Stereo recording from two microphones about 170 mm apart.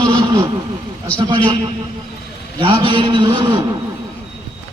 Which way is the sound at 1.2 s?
30° right (ahead or behind).